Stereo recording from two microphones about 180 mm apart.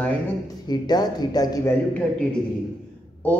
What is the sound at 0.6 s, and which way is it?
Speech, 20° left (ahead or behind).